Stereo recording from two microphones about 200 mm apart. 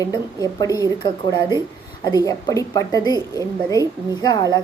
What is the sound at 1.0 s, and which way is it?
A woman's voice, 20° left (ahead or behind).